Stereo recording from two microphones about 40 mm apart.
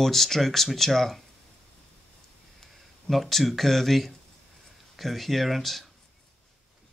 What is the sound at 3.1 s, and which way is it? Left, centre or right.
Speech, centre.